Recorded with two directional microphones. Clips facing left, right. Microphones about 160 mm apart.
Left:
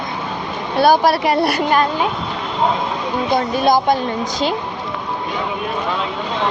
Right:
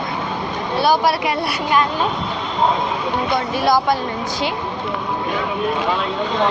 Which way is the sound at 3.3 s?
20° left (ahead or behind).